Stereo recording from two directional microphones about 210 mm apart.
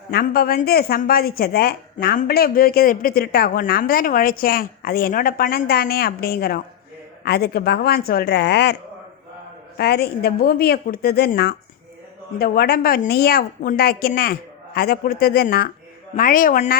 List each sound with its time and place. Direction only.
0.1 s speech: 45° left (ahead or behind)
9.7 s a woman's voice: 50° left (ahead or behind)